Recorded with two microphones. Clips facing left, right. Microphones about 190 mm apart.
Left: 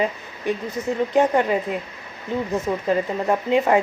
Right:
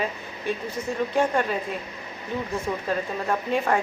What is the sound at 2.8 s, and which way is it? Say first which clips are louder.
Speech: left 6 dB; 20° left (ahead or behind).